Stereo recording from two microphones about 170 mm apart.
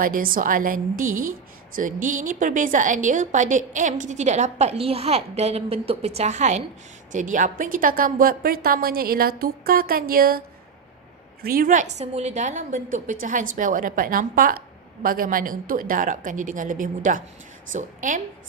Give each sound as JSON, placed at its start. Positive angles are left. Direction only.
{"t": 0.0, "sound": "a woman's voice", "side_deg": -55}
{"t": 11.4, "sound": "a woman's voice", "side_deg": -60}